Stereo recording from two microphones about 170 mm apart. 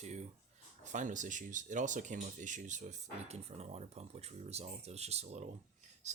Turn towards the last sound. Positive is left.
turn(degrees=-45)  # may be behind; listen again after turning